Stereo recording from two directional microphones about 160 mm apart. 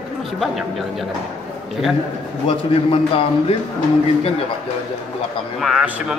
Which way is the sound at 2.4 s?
35° left (ahead or behind).